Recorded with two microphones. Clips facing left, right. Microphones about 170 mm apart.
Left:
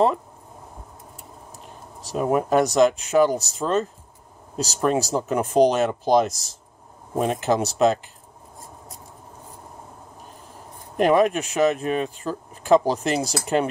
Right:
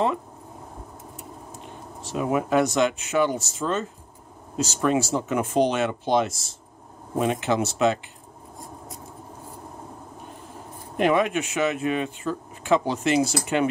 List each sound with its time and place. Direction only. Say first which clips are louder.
2.0 s speech: left 3 dB; 40° left (ahead or behind)
11.0 s speech: left 3 dB; 40° left (ahead or behind)